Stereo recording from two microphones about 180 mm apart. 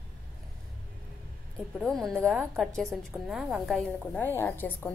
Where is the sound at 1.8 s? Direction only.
Centre (ahead or behind).